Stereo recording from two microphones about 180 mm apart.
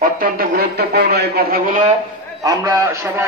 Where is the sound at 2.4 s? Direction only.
20° right (ahead or behind).